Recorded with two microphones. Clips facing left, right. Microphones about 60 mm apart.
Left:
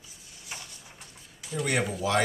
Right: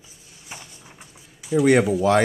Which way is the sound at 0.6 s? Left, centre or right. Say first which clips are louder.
Right 3 dB; right.